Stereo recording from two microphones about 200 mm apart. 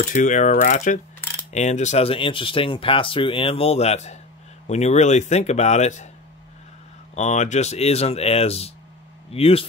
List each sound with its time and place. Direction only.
0.0 s speech: 40° left (ahead or behind)
7.2 s speech: 35° left (ahead or behind)